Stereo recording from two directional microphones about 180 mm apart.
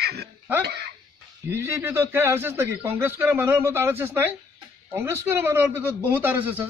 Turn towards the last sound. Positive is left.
turn(degrees=-10)  # may be behind; listen again after turning